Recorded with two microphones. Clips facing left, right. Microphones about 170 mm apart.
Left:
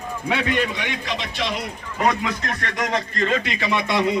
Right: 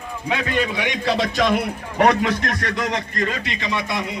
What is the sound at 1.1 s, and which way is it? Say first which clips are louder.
A man's voice: right 10 dB; 40° right (ahead or behind).